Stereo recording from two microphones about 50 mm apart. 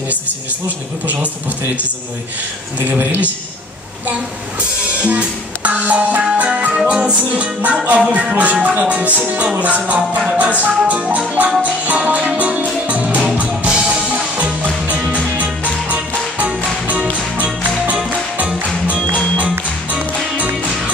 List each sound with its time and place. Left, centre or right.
2.8 s a man's voice: right
4.1 s music: right
19.9 s music: right